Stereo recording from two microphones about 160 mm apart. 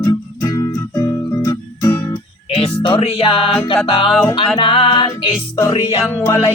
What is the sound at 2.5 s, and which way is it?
Music, 35° left (ahead or behind).